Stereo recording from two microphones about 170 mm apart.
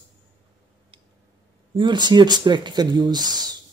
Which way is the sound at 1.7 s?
25° right (ahead or behind).